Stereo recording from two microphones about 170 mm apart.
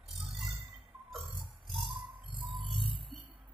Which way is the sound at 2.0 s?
30° right (ahead or behind).